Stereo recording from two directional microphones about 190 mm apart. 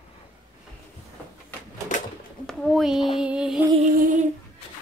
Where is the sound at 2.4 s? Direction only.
Centre (ahead or behind).